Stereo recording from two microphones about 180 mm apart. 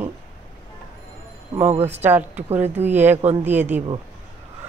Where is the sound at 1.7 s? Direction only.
35° right (ahead or behind).